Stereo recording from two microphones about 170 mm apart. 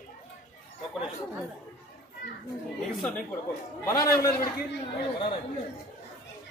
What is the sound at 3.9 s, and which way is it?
Speech, 20° left (ahead or behind).